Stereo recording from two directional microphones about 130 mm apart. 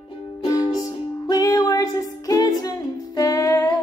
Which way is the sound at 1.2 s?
30° left (ahead or behind).